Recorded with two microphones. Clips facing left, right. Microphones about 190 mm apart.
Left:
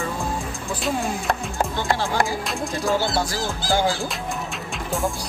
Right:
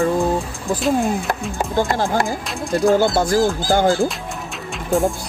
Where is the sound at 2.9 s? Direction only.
50° right (ahead or behind).